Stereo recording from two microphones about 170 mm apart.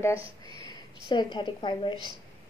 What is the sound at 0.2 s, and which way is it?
Speech, 30° right (ahead or behind).